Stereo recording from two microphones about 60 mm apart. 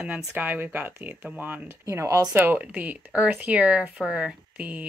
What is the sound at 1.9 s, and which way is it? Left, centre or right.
Speech, right.